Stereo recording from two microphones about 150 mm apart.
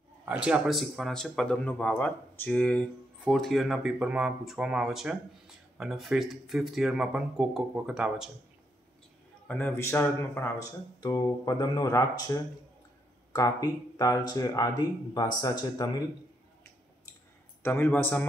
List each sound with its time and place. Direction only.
0.2 s speech: 10° right (ahead or behind)
9.5 s speech: 10° left (ahead or behind)
11.0 s speech: 25° left (ahead or behind)
17.6 s speech: 15° left (ahead or behind)